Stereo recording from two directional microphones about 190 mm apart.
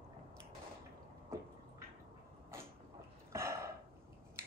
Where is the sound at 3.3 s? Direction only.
15° right (ahead or behind).